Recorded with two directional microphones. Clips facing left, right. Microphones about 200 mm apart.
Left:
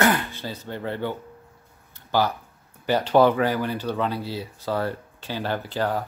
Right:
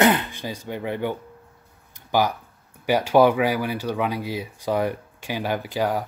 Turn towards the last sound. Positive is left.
turn(degrees=-10)  # may be behind; listen again after turning